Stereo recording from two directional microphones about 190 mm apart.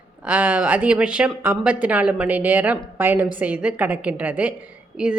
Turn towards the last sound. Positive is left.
turn(degrees=-5)  # may be behind; listen again after turning